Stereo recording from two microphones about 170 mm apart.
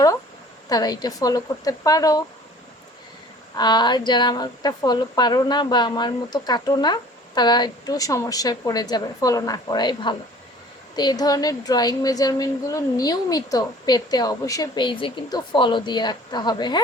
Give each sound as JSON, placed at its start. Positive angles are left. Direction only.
{"t": 0.7, "sound": "a woman's voice", "side_deg": 20}
{"t": 3.5, "sound": "a woman's voice", "side_deg": 25}